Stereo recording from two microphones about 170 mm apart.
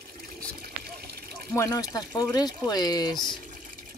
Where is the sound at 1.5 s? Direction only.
20° left (ahead or behind).